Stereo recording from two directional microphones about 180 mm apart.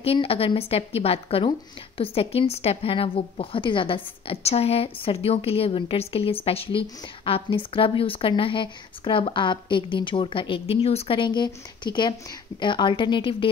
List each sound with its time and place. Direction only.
0.0 s speech: 30° left (ahead or behind)